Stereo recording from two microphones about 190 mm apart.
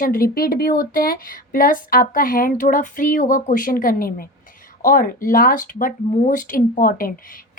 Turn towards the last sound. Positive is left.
turn(degrees=50)  # may be behind; listen again after turning